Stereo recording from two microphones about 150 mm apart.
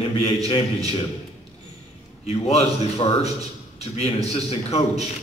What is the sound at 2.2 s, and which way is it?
A man's voice, 45° left (ahead or behind).